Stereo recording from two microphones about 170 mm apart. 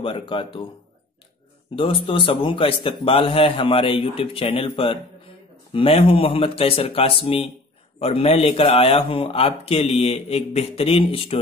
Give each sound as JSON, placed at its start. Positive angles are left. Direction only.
{"t": 0.0, "sound": "a man's voice", "side_deg": 30}
{"t": 1.8, "sound": "a man's voice", "side_deg": 30}